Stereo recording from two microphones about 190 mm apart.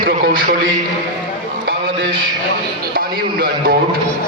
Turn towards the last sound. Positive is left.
turn(degrees=-55)  # may be behind; listen again after turning